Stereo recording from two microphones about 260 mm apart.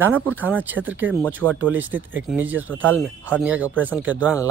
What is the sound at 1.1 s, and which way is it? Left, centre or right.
Speech, centre.